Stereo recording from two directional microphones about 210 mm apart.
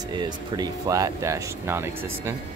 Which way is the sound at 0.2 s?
15° right (ahead or behind).